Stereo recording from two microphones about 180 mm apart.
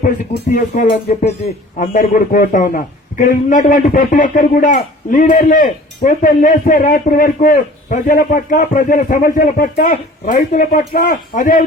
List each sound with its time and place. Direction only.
0.5 s a man's voice: 45° left (ahead or behind)